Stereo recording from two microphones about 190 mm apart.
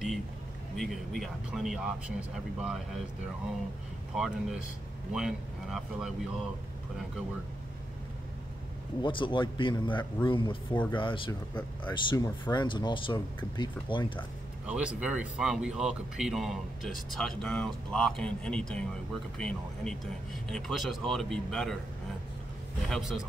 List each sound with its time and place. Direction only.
0.7 s speech: centre (ahead or behind)
4.1 s speech: centre (ahead or behind)
9.0 s speech: 25° left (ahead or behind)
14.7 s speech: 5° right (ahead or behind)
22.8 s speech: centre (ahead or behind)